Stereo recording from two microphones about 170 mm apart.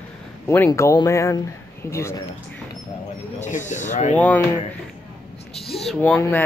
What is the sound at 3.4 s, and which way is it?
Speech, 45° left (ahead or behind).